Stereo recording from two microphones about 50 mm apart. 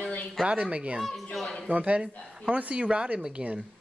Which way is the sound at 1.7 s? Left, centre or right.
Right.